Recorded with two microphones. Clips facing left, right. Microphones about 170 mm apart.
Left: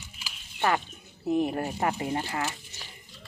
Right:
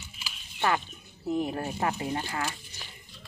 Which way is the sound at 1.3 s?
20° left (ahead or behind).